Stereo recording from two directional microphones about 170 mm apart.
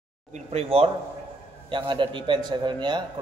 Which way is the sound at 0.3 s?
35° right (ahead or behind).